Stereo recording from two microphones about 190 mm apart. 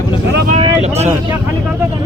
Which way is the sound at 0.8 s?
35° right (ahead or behind).